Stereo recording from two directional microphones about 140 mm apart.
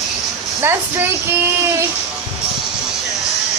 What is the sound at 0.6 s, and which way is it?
Speech, 15° right (ahead or behind).